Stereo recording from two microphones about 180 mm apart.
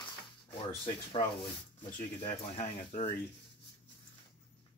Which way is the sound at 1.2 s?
40° left (ahead or behind).